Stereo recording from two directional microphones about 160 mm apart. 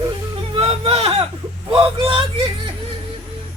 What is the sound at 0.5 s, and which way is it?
Speech, 40° right (ahead or behind).